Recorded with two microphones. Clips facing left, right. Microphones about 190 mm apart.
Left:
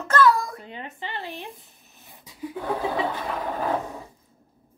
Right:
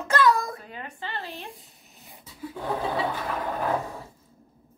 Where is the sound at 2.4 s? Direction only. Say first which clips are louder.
Left 4 dB; 15° left (ahead or behind).